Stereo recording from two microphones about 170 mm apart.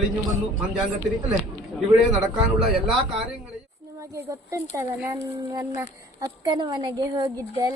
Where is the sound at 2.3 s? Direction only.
5° right (ahead or behind).